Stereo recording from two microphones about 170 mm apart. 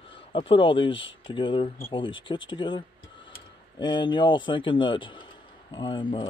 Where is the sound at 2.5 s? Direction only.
30° left (ahead or behind).